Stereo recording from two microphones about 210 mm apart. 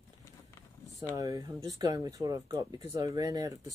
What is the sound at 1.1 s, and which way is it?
Speech, 15° right (ahead or behind).